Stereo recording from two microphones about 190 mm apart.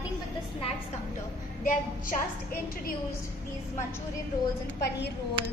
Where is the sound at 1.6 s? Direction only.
45° left (ahead or behind).